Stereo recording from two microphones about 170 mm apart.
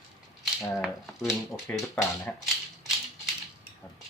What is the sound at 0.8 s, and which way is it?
Speech, centre (ahead or behind).